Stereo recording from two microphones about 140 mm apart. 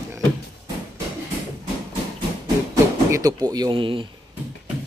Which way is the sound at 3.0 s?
25° right (ahead or behind).